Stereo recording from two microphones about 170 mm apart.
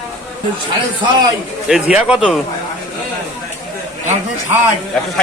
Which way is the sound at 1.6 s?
5° right (ahead or behind).